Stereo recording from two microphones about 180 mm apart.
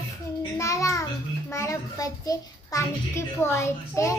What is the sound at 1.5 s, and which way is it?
A child's voice, 15° left (ahead or behind).